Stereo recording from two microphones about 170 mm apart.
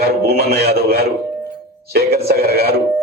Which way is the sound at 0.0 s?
65° right (ahead or behind).